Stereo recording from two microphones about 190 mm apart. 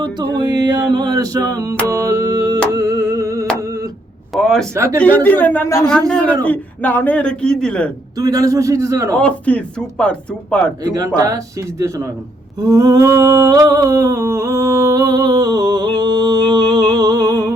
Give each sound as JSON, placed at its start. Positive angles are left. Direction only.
{"t": 0.2, "sound": "a sound", "side_deg": -20}
{"t": 1.9, "sound": "music", "side_deg": -15}
{"t": 2.7, "sound": "singing", "side_deg": -15}
{"t": 4.4, "sound": "a sound", "side_deg": 0}
{"t": 4.7, "sound": "a man's voice", "side_deg": -15}
{"t": 5.0, "sound": "speech", "side_deg": 10}
{"t": 8.2, "sound": "a man's voice", "side_deg": -20}
{"t": 9.1, "sound": "speech", "side_deg": 5}
{"t": 10.8, "sound": "a man's voice", "side_deg": -20}
{"t": 12.7, "sound": "a sound", "side_deg": -20}